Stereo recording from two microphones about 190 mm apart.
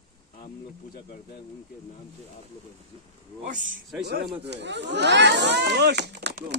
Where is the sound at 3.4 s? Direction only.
40° right (ahead or behind).